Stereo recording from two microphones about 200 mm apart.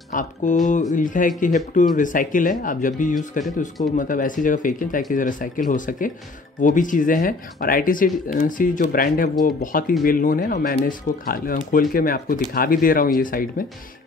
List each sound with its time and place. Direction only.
0.1 s speech: 40° left (ahead or behind)